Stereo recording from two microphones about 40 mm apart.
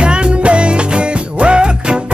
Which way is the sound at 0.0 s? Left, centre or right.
Right.